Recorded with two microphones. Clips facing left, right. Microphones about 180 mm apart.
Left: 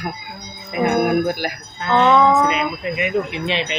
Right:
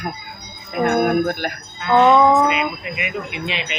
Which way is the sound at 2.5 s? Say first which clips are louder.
Left 1 dB; 35° left (ahead or behind).